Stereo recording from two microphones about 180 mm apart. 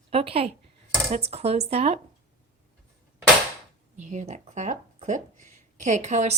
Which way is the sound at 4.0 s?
40° right (ahead or behind).